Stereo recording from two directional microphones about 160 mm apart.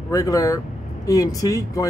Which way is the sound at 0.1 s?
20° left (ahead or behind).